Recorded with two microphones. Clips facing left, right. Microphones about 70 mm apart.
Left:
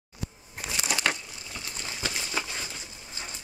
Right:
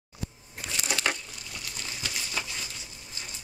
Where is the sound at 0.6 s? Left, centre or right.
Centre.